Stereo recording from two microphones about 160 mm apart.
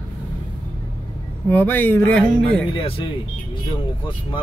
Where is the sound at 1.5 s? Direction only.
10° left (ahead or behind).